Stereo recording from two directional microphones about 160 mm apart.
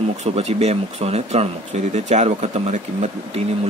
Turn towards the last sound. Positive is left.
turn(degrees=-45)  # may be behind; listen again after turning